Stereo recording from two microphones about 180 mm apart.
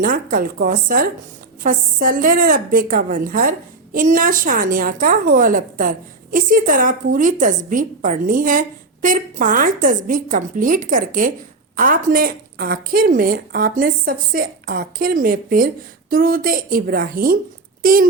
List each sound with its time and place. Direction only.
0.0 s a woman's voice: 50° right (ahead or behind)